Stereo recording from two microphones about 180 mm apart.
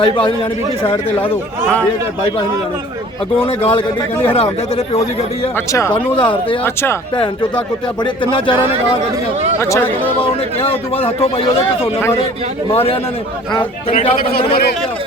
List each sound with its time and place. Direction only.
0.0 s speech: 30° left (ahead or behind)
3.3 s a man's voice: 30° left (ahead or behind)
5.9 s speech: 30° left (ahead or behind)
9.6 s speech: 15° left (ahead or behind)
10.6 s a man's voice: 35° left (ahead or behind)
12.7 s a man's voice: 30° left (ahead or behind)